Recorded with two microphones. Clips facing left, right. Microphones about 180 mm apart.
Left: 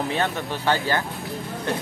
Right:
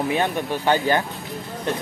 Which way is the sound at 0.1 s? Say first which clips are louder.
Right 3 dB; 15° right (ahead or behind).